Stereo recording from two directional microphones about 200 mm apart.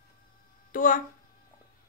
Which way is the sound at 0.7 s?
45° left (ahead or behind).